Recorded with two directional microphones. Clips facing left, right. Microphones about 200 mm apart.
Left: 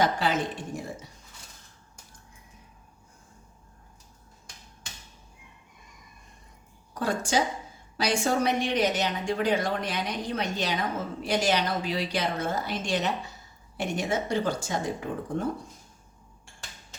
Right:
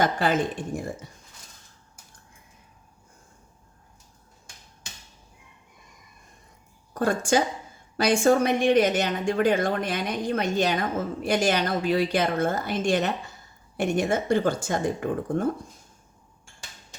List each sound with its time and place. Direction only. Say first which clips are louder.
0.0 s a woman's voice: right 3 dB; 50° right (ahead or behind)
7.0 s a woman's voice: right 4 dB; 50° right (ahead or behind)